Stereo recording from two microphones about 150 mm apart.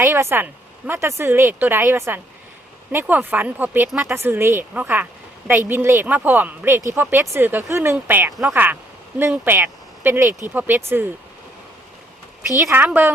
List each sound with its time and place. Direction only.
0.0 s a woman's voice: 20° right (ahead or behind)
12.5 s a woman's voice: 15° right (ahead or behind)